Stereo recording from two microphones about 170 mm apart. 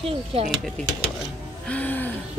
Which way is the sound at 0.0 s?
35° right (ahead or behind).